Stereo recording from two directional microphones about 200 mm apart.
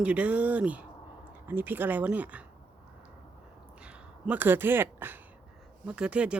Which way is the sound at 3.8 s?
10° right (ahead or behind).